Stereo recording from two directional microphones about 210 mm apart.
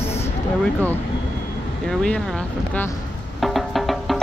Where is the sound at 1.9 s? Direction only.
5° left (ahead or behind).